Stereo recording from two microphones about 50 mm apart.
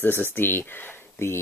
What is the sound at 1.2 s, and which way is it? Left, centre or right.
Speech, left.